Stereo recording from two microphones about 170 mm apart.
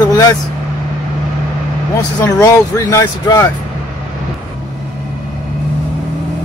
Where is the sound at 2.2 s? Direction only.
15° left (ahead or behind).